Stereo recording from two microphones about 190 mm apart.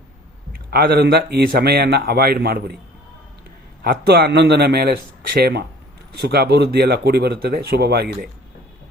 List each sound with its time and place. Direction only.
0.5 s a man's voice: 50° right (ahead or behind)
3.8 s a man's voice: 55° right (ahead or behind)